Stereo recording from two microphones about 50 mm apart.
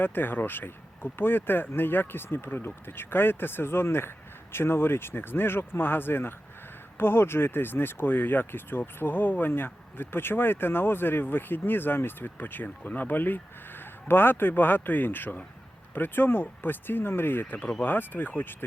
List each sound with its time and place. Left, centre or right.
0.0 s speech: left